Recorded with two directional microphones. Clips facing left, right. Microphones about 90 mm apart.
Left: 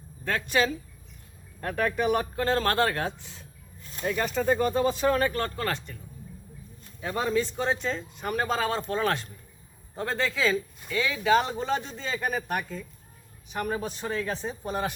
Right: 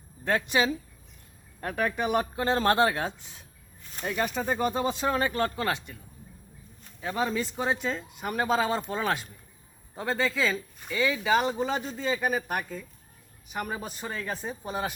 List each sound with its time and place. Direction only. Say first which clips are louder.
0.3 s speech: even; 15° right (ahead or behind)
7.0 s speech: left 2 dB; centre (ahead or behind)